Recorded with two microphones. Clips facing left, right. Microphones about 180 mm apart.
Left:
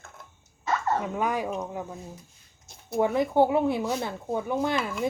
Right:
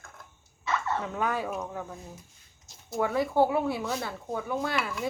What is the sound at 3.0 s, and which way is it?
Speech, 20° left (ahead or behind).